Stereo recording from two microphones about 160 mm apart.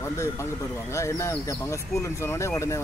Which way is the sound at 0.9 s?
20° left (ahead or behind).